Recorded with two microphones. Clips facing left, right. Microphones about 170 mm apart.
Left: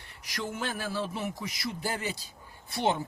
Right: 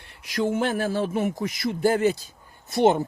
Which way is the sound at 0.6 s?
55° right (ahead or behind).